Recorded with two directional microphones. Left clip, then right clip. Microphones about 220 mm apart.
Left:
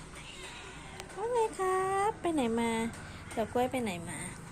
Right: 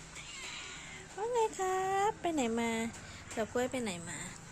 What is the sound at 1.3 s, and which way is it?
Speech, 20° right (ahead or behind).